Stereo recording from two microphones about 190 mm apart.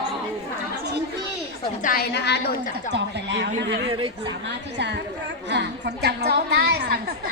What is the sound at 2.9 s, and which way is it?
Speech, 70° right (ahead or behind).